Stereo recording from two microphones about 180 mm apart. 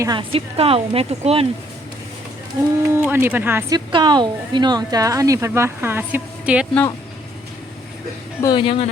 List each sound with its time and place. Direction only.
0.0 s speech: 25° right (ahead or behind)
2.9 s speech: 10° right (ahead or behind)
3.8 s speech: 25° right (ahead or behind); by 6.7 s 5° right (ahead or behind)
8.4 s speech: 25° left (ahead or behind)